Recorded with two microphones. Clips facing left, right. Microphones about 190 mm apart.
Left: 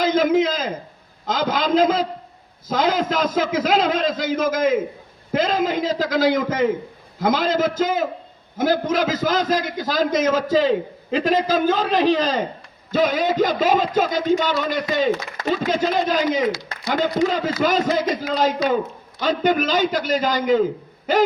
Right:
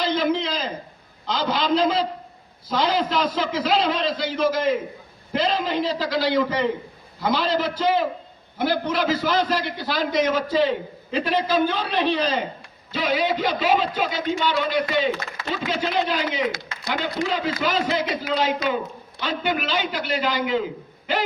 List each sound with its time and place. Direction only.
0.0 s a man's voice: 45° left (ahead or behind)